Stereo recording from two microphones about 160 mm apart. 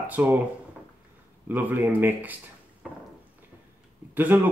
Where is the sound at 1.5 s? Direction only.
10° right (ahead or behind).